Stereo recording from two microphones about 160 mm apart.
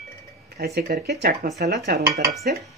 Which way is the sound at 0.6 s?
80° right.